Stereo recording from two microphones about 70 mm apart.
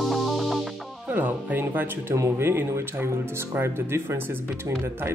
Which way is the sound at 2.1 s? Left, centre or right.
Right.